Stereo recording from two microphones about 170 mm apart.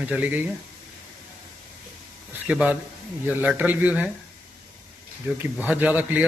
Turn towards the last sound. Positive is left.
turn(degrees=-10)  # may be behind; listen again after turning